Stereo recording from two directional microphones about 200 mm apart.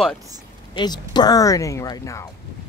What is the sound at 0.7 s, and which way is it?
Speech, 20° left (ahead or behind).